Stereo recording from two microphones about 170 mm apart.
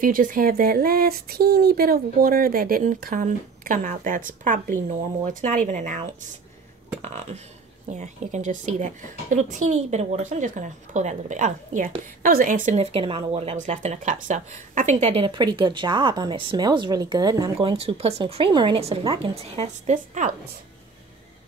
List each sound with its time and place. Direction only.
0.0 s a woman's voice: 55° right (ahead or behind); by 17.5 s 25° right (ahead or behind)
17.6 s speech: 35° right (ahead or behind)